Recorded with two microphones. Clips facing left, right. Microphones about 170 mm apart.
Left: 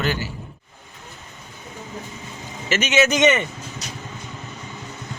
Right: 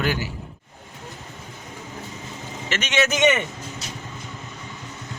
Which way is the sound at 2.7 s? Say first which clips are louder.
Left 4 dB; 5° left (ahead or behind).